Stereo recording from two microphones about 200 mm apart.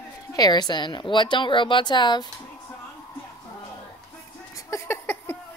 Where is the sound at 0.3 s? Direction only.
20° left (ahead or behind).